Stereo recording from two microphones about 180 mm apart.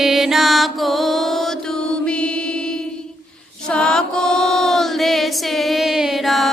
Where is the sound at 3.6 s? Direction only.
5° left (ahead or behind).